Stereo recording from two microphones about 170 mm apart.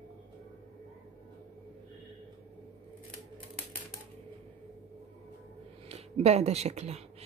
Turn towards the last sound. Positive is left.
turn(degrees=-40)  # may be behind; listen again after turning